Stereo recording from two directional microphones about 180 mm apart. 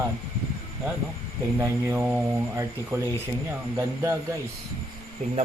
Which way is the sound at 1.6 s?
15° right (ahead or behind).